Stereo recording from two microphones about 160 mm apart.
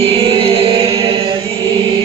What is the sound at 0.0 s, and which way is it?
Chant, 35° right (ahead or behind).